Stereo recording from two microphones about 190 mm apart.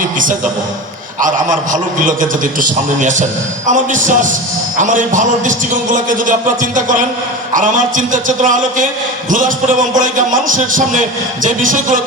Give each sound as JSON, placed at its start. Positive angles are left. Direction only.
{"t": 1.2, "sound": "a man's voice", "side_deg": -45}